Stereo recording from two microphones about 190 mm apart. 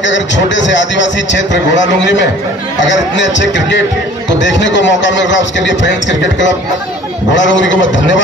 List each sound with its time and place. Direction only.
0.0 s a man's voice: 70° left (ahead or behind)
7.3 s a man's voice: 75° left (ahead or behind)